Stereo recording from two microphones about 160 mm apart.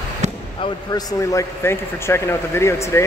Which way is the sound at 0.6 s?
30° left (ahead or behind).